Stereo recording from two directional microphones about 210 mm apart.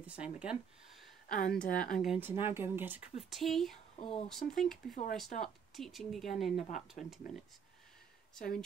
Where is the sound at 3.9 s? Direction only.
30° left (ahead or behind).